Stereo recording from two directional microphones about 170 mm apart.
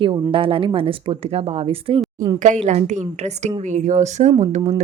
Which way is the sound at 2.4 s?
45° right (ahead or behind).